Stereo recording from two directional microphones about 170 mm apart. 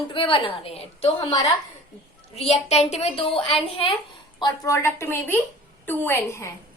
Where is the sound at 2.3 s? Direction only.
40° left (ahead or behind).